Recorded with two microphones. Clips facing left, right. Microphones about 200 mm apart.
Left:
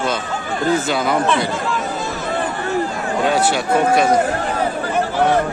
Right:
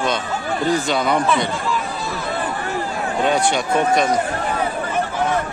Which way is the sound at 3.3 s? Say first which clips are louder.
Left 2 dB; 5° left (ahead or behind).